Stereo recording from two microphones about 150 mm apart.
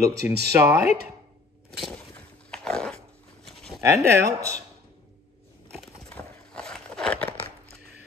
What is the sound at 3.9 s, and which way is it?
Speech, 20° right (ahead or behind).